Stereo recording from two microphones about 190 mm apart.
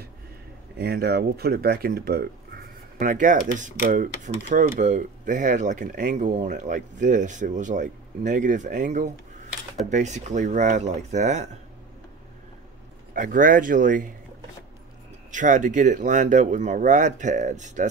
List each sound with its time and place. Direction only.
0.7 s speech: 55° right (ahead or behind); by 11.4 s 40° right (ahead or behind)
13.1 s speech: 45° right (ahead or behind)
15.3 s speech: 40° right (ahead or behind)